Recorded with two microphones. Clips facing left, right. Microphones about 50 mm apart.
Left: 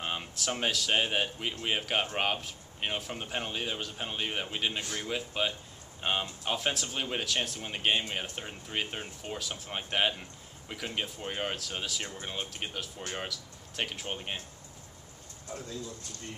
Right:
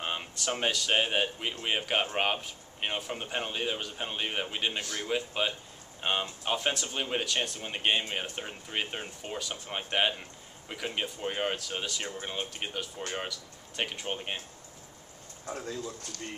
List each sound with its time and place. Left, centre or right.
0.0 s speech: centre
15.5 s a man's voice: right